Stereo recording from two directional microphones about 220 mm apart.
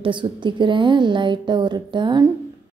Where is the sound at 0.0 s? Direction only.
20° right (ahead or behind).